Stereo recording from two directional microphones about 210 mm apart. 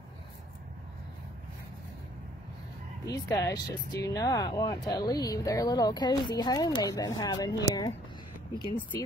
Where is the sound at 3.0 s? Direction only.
15° left (ahead or behind).